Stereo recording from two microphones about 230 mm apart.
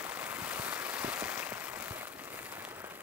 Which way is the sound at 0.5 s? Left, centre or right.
Centre.